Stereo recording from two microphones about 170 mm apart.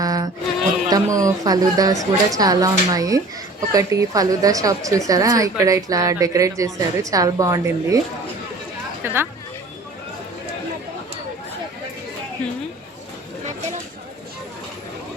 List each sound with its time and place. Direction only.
0.0 s a sound: 20° right (ahead or behind)
0.9 s a woman's voice: 20° right (ahead or behind)
9.0 s speech: 15° right (ahead or behind)